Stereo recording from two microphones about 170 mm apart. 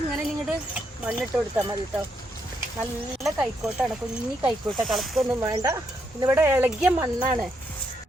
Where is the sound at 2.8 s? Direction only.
5° right (ahead or behind).